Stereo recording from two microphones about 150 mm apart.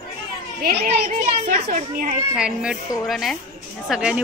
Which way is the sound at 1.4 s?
85° right.